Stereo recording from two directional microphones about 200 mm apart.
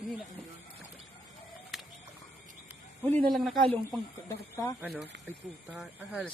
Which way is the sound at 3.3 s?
Centre (ahead or behind).